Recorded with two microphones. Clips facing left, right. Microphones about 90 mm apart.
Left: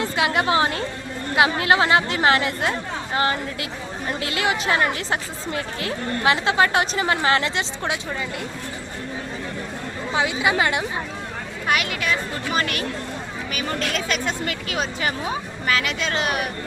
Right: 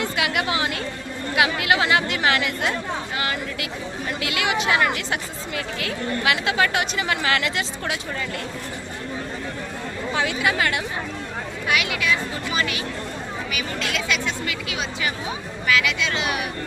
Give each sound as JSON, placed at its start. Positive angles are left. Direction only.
{"t": 0.0, "sound": "speech", "side_deg": 30}
{"t": 10.2, "sound": "speech", "side_deg": 20}
{"t": 11.7, "sound": "speech", "side_deg": 40}